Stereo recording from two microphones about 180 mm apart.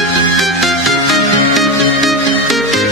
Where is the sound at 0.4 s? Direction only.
Centre (ahead or behind).